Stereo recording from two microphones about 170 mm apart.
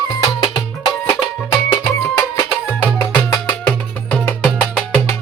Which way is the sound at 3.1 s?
10° left (ahead or behind).